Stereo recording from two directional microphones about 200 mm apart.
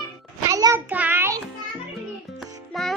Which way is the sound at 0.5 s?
15° right (ahead or behind).